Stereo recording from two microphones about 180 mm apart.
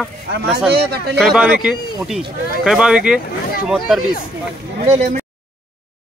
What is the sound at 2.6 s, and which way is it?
Speech, 5° right (ahead or behind).